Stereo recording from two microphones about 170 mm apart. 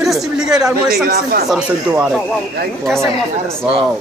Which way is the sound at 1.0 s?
60° right (ahead or behind).